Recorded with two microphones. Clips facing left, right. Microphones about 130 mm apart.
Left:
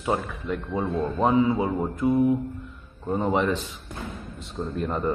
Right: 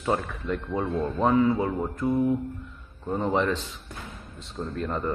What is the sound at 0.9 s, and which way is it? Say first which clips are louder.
Speech: left 1 dB; 15° left (ahead or behind).